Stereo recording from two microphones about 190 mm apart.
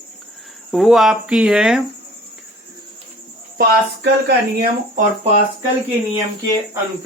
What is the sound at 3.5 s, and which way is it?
Speech, 55° right (ahead or behind).